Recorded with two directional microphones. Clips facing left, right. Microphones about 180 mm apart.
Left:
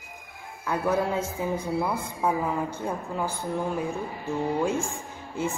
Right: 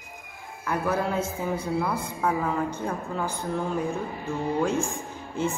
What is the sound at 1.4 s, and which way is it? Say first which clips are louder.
Speech: left 1 dB; 15° left (ahead or behind).